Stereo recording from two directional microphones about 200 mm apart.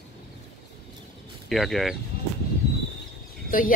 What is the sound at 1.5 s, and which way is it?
Speech, centre (ahead or behind).